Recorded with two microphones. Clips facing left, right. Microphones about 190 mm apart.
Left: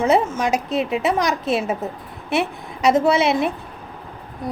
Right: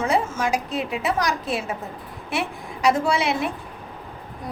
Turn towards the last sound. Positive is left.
turn(degrees=20)  # may be behind; listen again after turning